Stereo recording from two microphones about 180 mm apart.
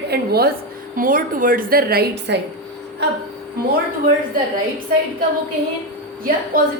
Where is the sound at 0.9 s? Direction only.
50° right (ahead or behind); by 2.4 s 65° right (ahead or behind).